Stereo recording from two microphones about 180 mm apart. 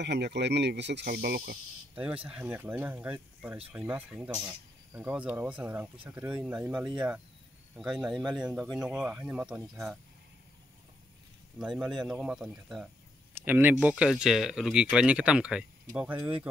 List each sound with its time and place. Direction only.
0.0 s speech: 70° right (ahead or behind)
2.0 s speech: 10° right (ahead or behind)
11.5 s speech: 5° right (ahead or behind)